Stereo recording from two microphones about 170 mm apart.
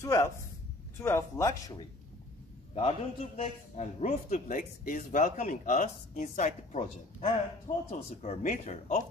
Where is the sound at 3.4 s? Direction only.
45° left (ahead or behind).